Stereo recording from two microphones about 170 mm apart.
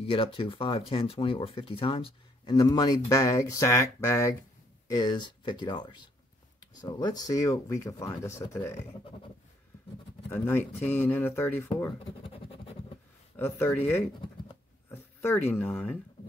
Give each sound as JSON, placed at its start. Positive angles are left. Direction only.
{"t": 0.0, "sound": "speech", "side_deg": 30}
{"t": 10.3, "sound": "speech", "side_deg": 15}
{"t": 12.0, "sound": "scratch", "side_deg": 35}
{"t": 13.4, "sound": "speech", "side_deg": 10}